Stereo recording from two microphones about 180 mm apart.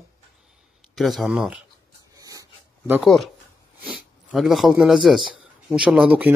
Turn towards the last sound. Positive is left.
turn(degrees=-10)  # may be behind; listen again after turning